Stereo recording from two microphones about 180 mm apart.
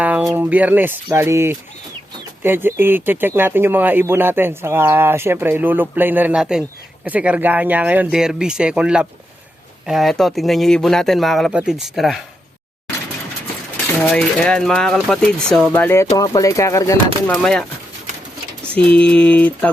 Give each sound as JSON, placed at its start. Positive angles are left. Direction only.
{"t": 0.0, "sound": "speech", "side_deg": -5}
{"t": 14.0, "sound": "speech", "side_deg": 5}
{"t": 17.2, "sound": "speech", "side_deg": 5}
{"t": 18.9, "sound": "speech", "side_deg": 5}